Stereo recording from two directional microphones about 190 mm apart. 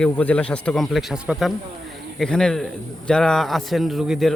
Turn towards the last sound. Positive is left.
turn(degrees=0)  # may be behind; listen again after turning